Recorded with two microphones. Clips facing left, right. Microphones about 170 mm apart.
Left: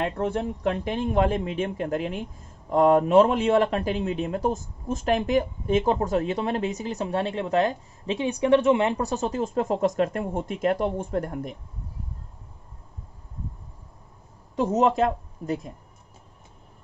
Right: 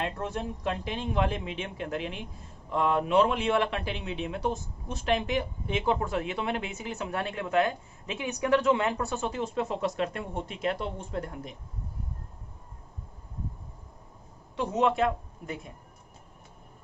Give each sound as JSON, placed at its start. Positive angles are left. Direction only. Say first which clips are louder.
{"t": 0.0, "sound": "a man's voice", "louder": "left 6 dB", "side_deg": 60}
{"t": 14.5, "sound": "a woman's voice", "louder": "left 5 dB", "side_deg": 40}